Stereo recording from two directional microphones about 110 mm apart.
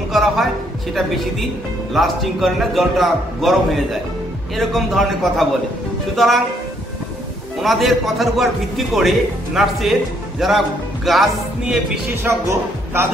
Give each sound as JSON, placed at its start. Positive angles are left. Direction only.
{"t": 0.1, "sound": "a woman's voice", "side_deg": 0}
{"t": 4.6, "sound": "a man's voice", "side_deg": 0}
{"t": 7.6, "sound": "a man's voice", "side_deg": 0}
{"t": 12.2, "sound": "speech", "side_deg": -25}